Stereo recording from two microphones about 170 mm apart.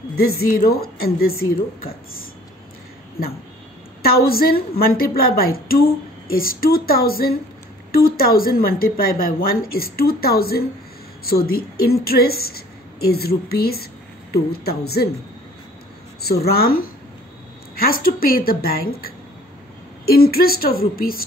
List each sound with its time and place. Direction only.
0.1 s a woman's voice: 65° left (ahead or behind)
3.2 s a woman's voice: 60° left (ahead or behind)
16.3 s a woman's voice: 65° left (ahead or behind)